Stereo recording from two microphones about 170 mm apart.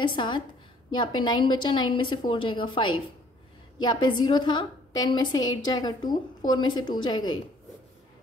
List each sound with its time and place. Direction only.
0.0 s a woman's voice: 30° left (ahead or behind)